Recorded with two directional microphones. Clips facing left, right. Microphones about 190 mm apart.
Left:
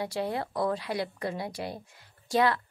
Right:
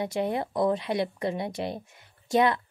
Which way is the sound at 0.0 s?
20° right (ahead or behind).